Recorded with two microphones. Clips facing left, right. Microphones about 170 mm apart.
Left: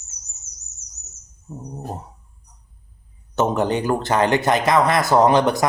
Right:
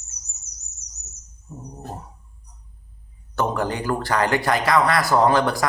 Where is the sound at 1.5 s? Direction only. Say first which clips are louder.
Left 4 dB; 35° left (ahead or behind).